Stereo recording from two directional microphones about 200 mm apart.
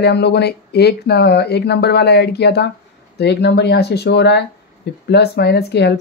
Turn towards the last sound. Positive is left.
turn(degrees=55)  # may be behind; listen again after turning